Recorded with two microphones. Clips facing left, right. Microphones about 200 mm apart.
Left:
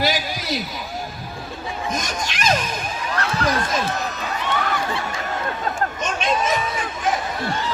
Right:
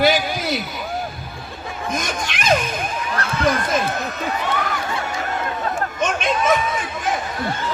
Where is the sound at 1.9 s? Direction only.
55° right (ahead or behind).